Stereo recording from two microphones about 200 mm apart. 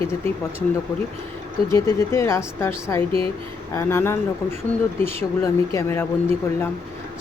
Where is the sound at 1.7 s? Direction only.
15° left (ahead or behind).